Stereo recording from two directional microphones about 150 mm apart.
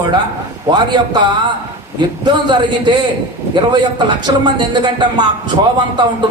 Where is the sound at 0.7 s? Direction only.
30° right (ahead or behind).